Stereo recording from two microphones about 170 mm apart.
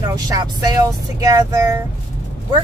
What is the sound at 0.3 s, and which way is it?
Speech, 25° right (ahead or behind).